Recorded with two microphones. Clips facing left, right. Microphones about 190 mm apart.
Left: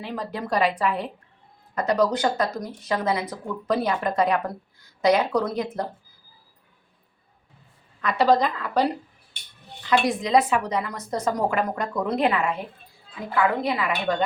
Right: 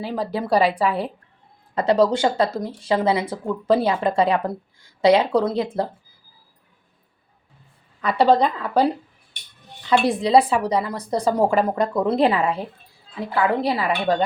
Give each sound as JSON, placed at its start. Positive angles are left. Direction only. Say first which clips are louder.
{"t": 0.0, "sound": "a woman's voice", "louder": "right 5 dB", "side_deg": -35}
{"t": 8.0, "sound": "speech", "louder": "right 3 dB", "side_deg": -30}
{"t": 10.0, "sound": "a woman's voice", "louder": "right 5 dB", "side_deg": -30}